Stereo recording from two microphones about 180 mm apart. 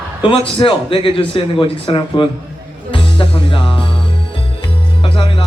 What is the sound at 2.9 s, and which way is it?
Music, 30° left (ahead or behind).